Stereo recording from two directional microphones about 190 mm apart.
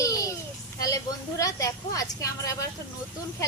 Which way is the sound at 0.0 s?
15° left (ahead or behind).